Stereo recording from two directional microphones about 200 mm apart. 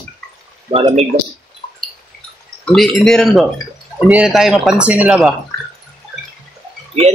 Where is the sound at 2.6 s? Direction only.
Centre (ahead or behind).